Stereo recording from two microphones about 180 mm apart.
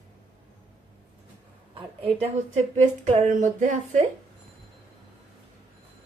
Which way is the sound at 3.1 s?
45° right (ahead or behind).